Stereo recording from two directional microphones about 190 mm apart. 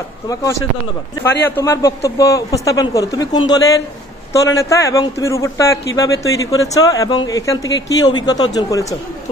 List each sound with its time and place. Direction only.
0.3 s a man's voice: 20° left (ahead or behind)